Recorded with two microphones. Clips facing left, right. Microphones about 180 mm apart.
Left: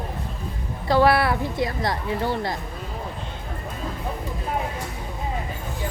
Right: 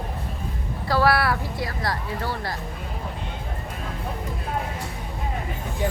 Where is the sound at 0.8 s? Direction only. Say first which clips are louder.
Left 3 dB; 20° left (ahead or behind).